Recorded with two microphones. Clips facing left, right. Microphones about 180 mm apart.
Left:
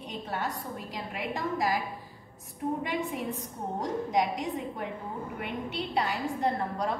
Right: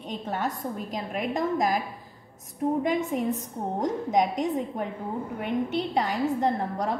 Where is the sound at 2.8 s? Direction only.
45° right (ahead or behind).